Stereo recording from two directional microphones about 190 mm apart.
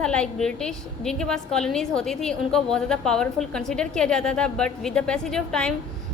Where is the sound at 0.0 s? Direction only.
5° left (ahead or behind).